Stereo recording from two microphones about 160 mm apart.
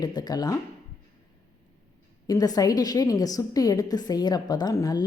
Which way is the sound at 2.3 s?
25° left (ahead or behind).